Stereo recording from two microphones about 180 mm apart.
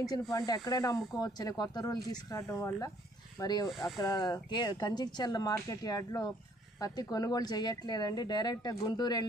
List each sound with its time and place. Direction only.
0.0 s speech: 20° left (ahead or behind)